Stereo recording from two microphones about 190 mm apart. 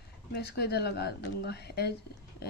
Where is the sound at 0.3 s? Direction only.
60° left (ahead or behind).